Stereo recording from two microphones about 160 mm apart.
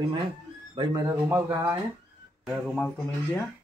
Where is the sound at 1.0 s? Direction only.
15° right (ahead or behind).